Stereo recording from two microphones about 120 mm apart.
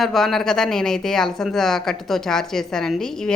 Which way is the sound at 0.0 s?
Centre (ahead or behind).